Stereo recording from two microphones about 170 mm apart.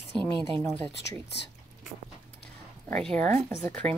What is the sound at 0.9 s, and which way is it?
Speech, 90° left.